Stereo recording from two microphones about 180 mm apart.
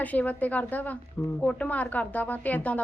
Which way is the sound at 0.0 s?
10° left (ahead or behind).